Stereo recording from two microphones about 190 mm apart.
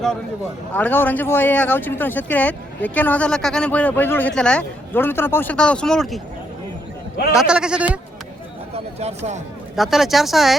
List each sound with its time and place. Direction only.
0.7 s speech: 10° left (ahead or behind)
7.3 s speech: 5° right (ahead or behind)
8.7 s a sound: 35° right (ahead or behind)
9.7 s speech: centre (ahead or behind)